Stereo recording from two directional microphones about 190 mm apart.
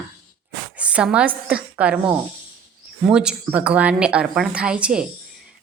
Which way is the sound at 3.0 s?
5° right (ahead or behind).